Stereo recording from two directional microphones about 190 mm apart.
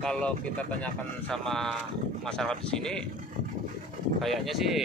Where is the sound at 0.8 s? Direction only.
5° left (ahead or behind).